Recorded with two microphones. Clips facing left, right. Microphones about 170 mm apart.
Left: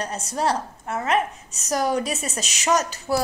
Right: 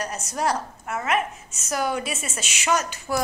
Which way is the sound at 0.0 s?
30° left (ahead or behind).